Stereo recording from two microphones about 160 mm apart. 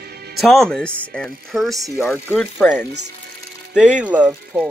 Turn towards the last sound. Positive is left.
turn(degrees=-5)  # may be behind; listen again after turning